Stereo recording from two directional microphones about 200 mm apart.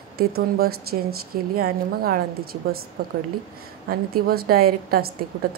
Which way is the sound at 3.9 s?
50° right (ahead or behind).